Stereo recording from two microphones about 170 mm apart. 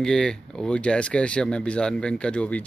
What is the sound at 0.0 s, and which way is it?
Speech, 5° left (ahead or behind).